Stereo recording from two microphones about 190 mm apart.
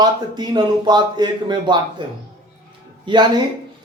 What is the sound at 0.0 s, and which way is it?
Speech, 20° right (ahead or behind).